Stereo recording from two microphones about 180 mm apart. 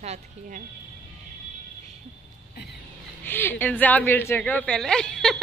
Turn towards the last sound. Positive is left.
turn(degrees=5)  # may be behind; listen again after turning